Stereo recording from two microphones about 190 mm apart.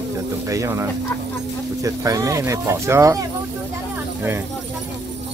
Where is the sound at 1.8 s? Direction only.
15° right (ahead or behind).